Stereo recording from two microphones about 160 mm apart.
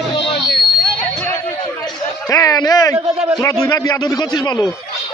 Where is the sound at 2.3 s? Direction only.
25° left (ahead or behind).